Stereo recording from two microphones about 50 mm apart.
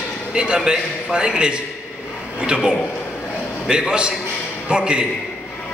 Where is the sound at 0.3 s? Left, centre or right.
Centre.